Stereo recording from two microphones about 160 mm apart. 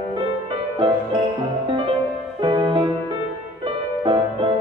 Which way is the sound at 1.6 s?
35° right (ahead or behind).